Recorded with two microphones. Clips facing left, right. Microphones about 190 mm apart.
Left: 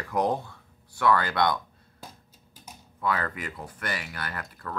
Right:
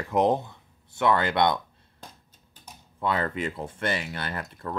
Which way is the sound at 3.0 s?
25° right (ahead or behind).